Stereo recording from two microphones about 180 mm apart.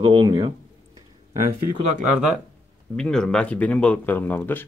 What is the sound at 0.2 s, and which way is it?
Speech, 25° right (ahead or behind).